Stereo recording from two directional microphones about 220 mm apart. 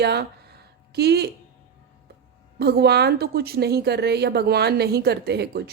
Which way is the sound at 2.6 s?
50° right (ahead or behind).